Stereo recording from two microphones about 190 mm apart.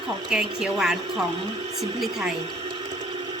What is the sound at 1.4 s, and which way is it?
Speech, 30° right (ahead or behind).